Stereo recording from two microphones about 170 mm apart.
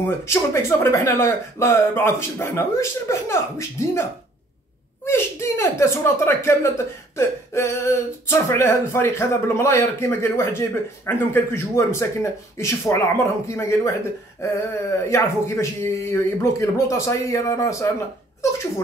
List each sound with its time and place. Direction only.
0.2 s speech: 15° left (ahead or behind)